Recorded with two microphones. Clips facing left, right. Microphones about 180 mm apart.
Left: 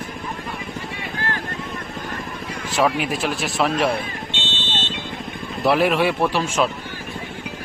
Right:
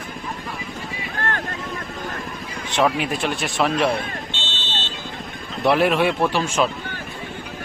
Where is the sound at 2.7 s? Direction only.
Centre (ahead or behind).